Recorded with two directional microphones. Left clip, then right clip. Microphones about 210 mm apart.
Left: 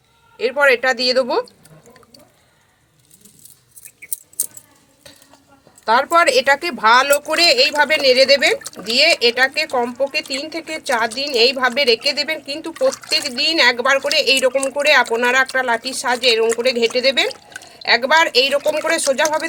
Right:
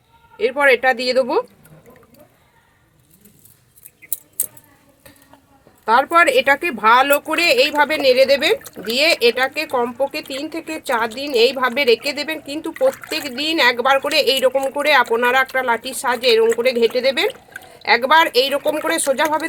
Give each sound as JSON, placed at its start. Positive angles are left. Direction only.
{"t": 0.3, "sound": "speech", "side_deg": -30}
{"t": 5.8, "sound": "speech", "side_deg": -20}
{"t": 12.8, "sound": "speech", "side_deg": -10}
{"t": 13.1, "sound": "speech", "side_deg": -25}
{"t": 18.6, "sound": "speech", "side_deg": -15}
{"t": 19.1, "sound": "speech", "side_deg": -30}